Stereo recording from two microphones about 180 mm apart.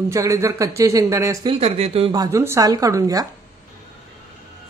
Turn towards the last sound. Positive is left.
turn(degrees=-20)  # may be behind; listen again after turning